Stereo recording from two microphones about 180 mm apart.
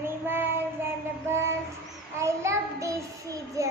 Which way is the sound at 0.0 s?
10° right (ahead or behind).